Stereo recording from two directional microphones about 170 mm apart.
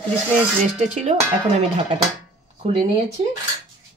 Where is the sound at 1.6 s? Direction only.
40° right (ahead or behind).